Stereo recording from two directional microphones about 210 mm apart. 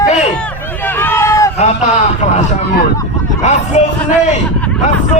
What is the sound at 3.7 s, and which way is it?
Speech, 35° left (ahead or behind).